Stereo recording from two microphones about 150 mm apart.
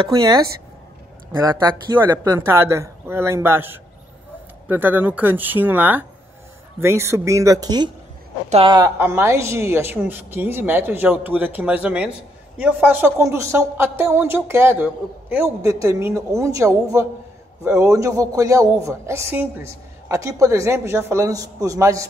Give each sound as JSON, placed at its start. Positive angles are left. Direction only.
{"t": 0.0, "sound": "a woman's voice", "side_deg": -30}
{"t": 8.9, "sound": "a woman's voice", "side_deg": -15}